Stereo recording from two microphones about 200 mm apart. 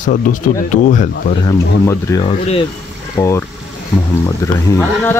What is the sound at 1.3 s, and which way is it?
Speech, 15° left (ahead or behind).